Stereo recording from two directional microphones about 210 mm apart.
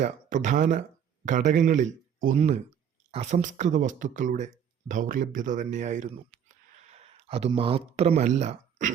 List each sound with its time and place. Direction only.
0.0 s speech: 35° right (ahead or behind)